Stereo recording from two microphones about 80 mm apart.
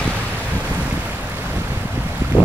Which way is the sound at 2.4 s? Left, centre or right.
Centre.